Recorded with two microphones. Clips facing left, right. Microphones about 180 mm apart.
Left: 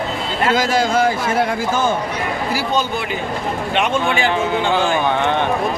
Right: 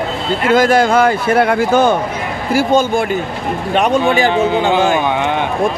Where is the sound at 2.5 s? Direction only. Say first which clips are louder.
Right 11 dB; 50° right (ahead or behind).